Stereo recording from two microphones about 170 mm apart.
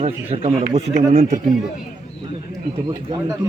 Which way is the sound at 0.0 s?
35° right (ahead or behind).